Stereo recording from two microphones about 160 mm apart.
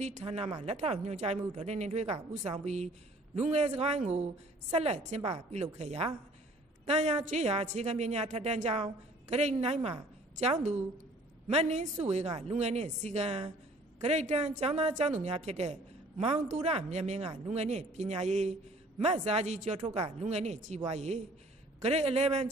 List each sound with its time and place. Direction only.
0.0 s a woman's voice: 40° right (ahead or behind)